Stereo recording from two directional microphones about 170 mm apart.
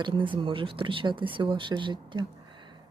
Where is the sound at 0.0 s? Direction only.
30° right (ahead or behind).